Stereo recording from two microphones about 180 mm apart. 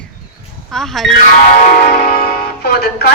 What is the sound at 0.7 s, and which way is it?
Speech, centre (ahead or behind).